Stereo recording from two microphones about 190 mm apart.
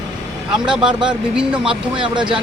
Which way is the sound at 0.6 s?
5° right (ahead or behind).